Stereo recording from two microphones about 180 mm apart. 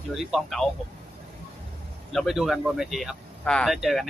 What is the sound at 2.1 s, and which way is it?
Speech, centre (ahead or behind).